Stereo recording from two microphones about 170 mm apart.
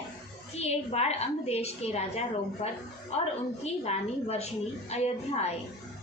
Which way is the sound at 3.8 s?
40° left (ahead or behind).